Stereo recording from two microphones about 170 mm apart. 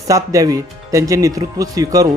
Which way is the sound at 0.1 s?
20° right (ahead or behind).